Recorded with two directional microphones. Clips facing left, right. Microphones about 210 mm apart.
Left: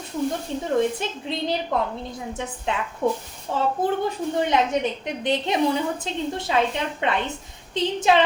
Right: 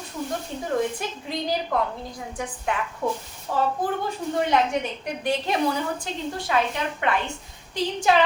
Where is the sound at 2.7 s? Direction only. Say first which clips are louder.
Left 3 dB; 25° left (ahead or behind).